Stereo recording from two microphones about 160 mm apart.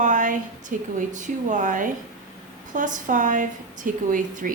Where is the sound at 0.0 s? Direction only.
55° right (ahead or behind).